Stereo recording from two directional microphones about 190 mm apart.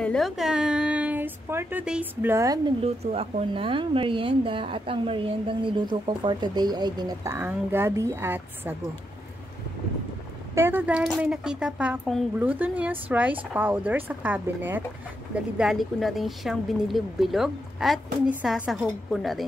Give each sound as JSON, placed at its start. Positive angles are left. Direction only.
{"t": 0.0, "sound": "a woman's voice", "side_deg": 0}
{"t": 2.8, "sound": "speech", "side_deg": -30}
{"t": 10.5, "sound": "a woman's voice", "side_deg": -10}